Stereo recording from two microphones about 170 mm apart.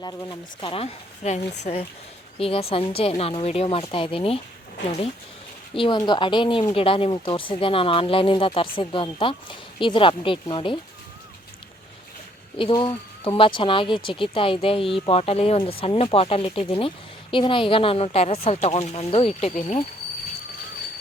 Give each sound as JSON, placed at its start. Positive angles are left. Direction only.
{"t": 0.0, "sound": "speech", "side_deg": 20}
{"t": 0.6, "sound": "speech", "side_deg": 35}
{"t": 2.4, "sound": "speech", "side_deg": 35}
{"t": 5.7, "sound": "speech", "side_deg": 30}
{"t": 12.7, "sound": "speech", "side_deg": 30}